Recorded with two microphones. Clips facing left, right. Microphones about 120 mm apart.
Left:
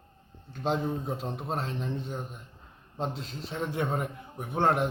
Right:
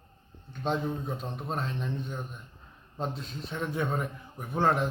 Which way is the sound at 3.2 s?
90° left.